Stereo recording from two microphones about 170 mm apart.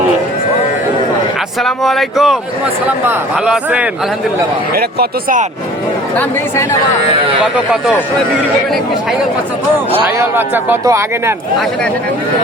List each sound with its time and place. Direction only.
1.6 s speech: centre (ahead or behind)
4.7 s speech: 65° right (ahead or behind)
10.2 s speech: 10° right (ahead or behind)